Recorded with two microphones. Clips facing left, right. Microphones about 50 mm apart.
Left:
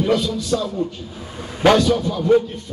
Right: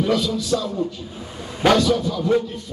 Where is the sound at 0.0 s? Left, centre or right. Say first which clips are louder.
Left 1 dB; left.